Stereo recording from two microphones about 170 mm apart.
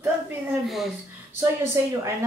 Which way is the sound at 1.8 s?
15° right (ahead or behind).